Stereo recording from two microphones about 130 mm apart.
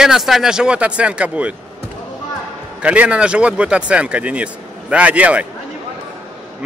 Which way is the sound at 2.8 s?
10° right (ahead or behind).